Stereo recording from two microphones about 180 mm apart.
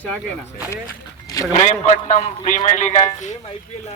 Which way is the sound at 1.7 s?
45° left (ahead or behind).